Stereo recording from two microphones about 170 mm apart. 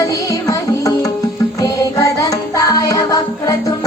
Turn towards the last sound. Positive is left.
turn(degrees=20)  # may be behind; listen again after turning